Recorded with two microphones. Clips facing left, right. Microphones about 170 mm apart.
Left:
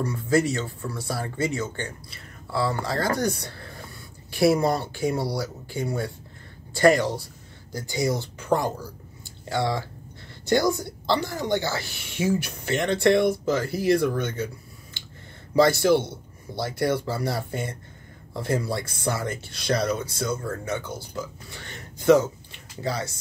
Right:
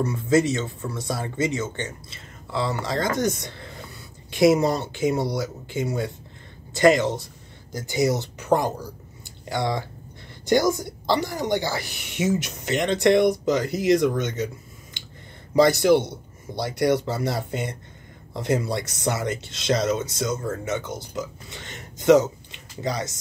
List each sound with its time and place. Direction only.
0.0 s speech: 20° right (ahead or behind)
15.5 s speech: 20° right (ahead or behind)